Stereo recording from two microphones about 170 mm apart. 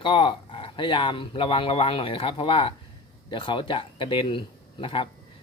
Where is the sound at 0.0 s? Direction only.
30° left (ahead or behind).